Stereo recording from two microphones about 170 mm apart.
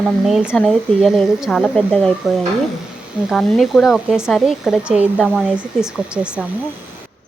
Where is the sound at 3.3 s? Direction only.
Centre (ahead or behind).